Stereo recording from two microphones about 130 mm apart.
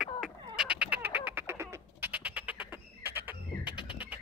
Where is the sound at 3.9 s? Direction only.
10° right (ahead or behind).